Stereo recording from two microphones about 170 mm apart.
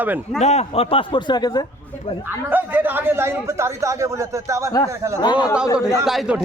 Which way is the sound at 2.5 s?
10° right (ahead or behind).